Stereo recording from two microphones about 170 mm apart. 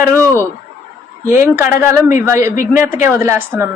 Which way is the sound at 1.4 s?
15° right (ahead or behind).